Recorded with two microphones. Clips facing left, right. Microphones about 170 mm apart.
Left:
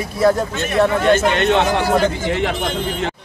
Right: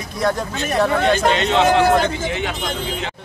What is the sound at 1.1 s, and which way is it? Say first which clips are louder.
Speech: left 2 dB; 55° left (ahead or behind).